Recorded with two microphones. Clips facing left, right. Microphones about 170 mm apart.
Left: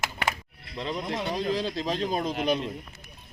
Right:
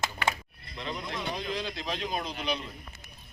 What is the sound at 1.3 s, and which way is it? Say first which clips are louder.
Speech: left 9 dB; 40° left (ahead or behind).